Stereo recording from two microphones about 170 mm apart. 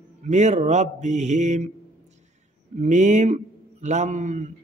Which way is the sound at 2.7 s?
45° right (ahead or behind).